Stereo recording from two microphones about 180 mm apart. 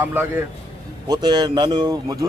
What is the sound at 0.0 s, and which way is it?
Speech, 10° right (ahead or behind).